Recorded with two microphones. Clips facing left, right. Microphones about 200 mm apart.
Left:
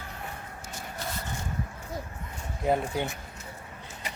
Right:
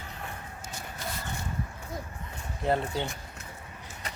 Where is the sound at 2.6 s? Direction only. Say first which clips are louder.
Left 1 dB; 10° left (ahead or behind).